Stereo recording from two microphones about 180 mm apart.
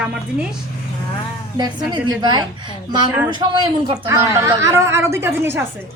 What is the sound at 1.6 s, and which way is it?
A woman's voice, 25° right (ahead or behind).